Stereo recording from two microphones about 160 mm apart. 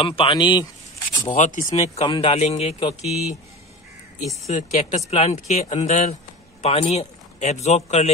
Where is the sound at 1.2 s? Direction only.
55° left (ahead or behind).